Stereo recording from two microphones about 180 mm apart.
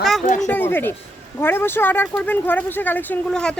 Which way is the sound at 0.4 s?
10° left (ahead or behind).